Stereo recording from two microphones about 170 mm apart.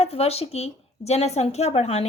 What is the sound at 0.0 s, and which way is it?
A woman's voice, 35° left (ahead or behind).